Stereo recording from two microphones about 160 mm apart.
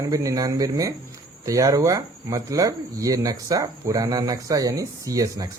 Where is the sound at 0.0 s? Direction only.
20° right (ahead or behind).